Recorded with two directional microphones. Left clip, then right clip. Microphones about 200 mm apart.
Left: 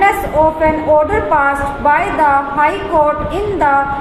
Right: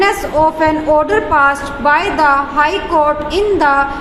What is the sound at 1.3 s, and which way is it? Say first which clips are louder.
A woman's voice: right 2 dB; 50° right (ahead or behind).